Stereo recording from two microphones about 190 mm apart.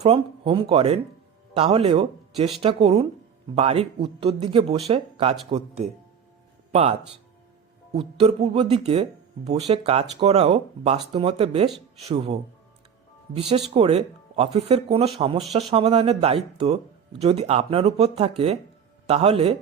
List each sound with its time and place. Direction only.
0.0 s speech: 30° right (ahead or behind)
7.9 s speech: 30° right (ahead or behind)